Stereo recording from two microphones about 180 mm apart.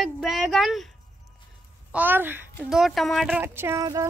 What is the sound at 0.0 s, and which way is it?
Speech, centre (ahead or behind).